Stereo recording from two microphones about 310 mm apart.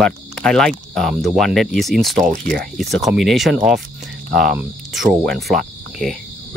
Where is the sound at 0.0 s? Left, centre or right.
Centre.